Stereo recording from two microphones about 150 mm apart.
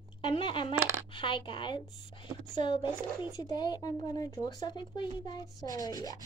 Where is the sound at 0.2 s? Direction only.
35° left (ahead or behind).